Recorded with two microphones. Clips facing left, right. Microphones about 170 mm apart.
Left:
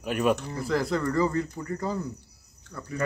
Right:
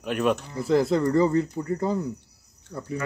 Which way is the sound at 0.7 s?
25° right (ahead or behind).